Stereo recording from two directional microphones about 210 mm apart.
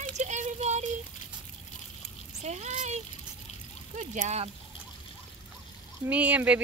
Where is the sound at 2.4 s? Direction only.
35° right (ahead or behind).